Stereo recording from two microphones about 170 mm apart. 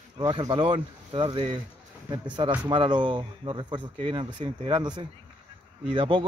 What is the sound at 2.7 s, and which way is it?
A man's voice, 25° right (ahead or behind).